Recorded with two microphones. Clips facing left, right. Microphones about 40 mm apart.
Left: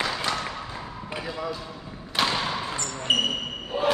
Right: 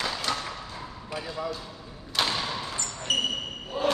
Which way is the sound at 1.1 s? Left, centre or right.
Left.